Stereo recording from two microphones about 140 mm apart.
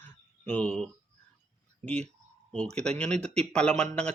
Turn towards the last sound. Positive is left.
turn(degrees=10)  # may be behind; listen again after turning